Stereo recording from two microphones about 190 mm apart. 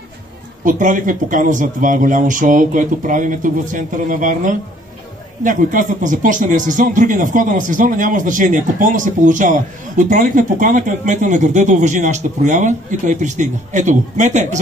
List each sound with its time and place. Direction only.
0.7 s speech: 40° right (ahead or behind)